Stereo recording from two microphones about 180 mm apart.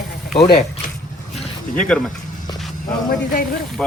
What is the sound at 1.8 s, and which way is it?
Speech, 5° left (ahead or behind).